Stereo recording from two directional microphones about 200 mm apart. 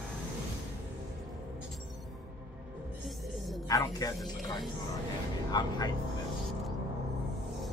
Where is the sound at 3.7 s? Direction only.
15° left (ahead or behind).